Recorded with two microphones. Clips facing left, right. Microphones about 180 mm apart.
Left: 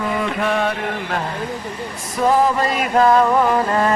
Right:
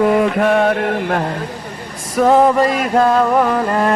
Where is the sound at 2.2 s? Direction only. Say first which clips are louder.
Right 5 dB; 65° right (ahead or behind).